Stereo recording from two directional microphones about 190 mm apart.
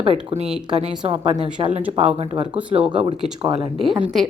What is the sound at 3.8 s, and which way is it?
Speech, 5° right (ahead or behind).